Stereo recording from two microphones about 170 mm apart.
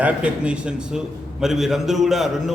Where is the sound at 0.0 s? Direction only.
5° right (ahead or behind).